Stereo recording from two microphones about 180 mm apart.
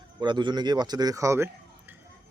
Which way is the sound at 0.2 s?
25° right (ahead or behind).